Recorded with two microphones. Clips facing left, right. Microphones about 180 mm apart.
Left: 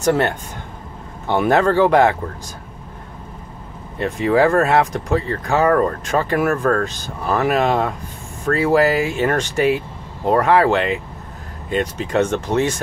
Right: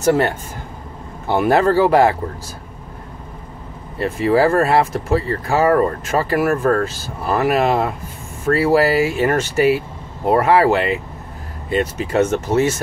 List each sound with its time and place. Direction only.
0.0 s speech: 5° right (ahead or behind)
4.0 s speech: 5° right (ahead or behind)